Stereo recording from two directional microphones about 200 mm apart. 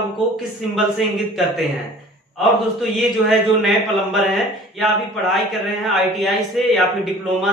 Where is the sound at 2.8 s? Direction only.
Centre (ahead or behind).